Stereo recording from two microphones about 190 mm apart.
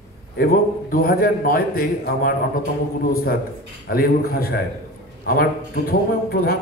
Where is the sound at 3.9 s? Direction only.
50° left (ahead or behind).